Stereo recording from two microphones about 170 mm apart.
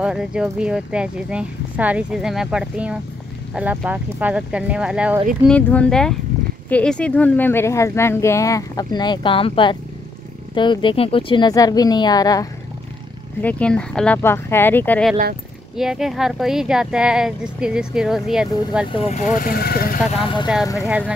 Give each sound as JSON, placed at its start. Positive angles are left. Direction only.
{"t": 0.0, "sound": "speech", "side_deg": -5}
{"t": 5.5, "sound": "speech", "side_deg": 10}
{"t": 13.4, "sound": "speech", "side_deg": 10}
{"t": 15.7, "sound": "speech", "side_deg": -5}
{"t": 18.9, "sound": "speech", "side_deg": 40}
{"t": 19.4, "sound": "speech", "side_deg": 60}